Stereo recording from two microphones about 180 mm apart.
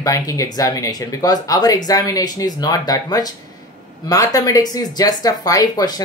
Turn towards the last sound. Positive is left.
turn(degrees=20)  # may be behind; listen again after turning